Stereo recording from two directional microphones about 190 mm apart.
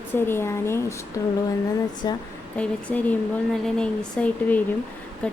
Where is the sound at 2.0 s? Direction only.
20° left (ahead or behind).